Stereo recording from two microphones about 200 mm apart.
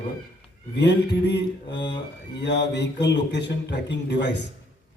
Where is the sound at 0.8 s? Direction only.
60° left (ahead or behind).